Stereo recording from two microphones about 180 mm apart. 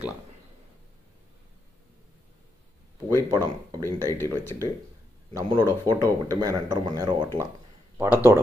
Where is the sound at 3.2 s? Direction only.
20° right (ahead or behind).